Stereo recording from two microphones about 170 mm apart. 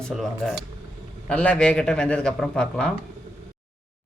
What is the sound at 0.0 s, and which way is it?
Speech, centre (ahead or behind).